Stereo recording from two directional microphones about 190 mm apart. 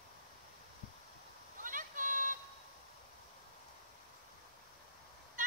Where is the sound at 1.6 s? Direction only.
45° right (ahead or behind).